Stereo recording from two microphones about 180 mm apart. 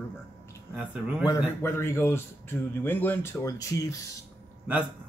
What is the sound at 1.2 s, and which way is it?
Speech, 15° left (ahead or behind).